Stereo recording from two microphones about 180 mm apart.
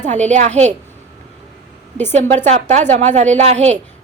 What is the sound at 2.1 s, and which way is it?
A woman's voice, 40° right (ahead or behind).